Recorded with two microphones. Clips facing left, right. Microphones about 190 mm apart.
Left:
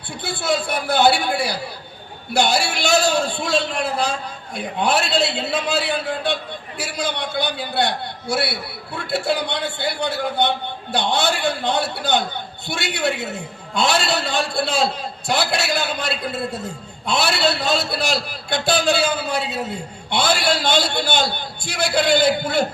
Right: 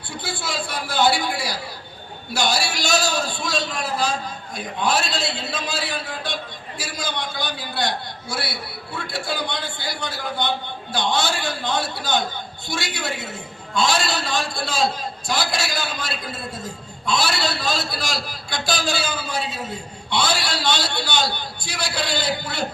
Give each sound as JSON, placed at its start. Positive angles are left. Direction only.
{"t": 0.2, "sound": "a man's voice", "side_deg": 60}